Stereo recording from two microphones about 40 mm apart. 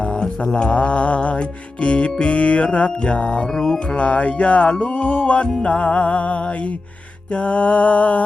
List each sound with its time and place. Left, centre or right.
0.5 s music: left
2.7 s mantra: left
3.4 s mantra: centre
3.9 s music: left